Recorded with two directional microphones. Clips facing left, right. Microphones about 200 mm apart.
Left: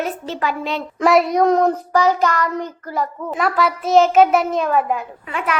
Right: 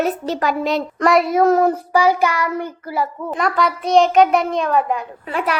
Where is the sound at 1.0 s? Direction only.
Centre (ahead or behind).